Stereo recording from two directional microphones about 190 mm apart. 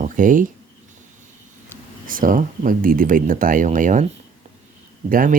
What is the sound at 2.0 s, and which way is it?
Speech, 45° right (ahead or behind).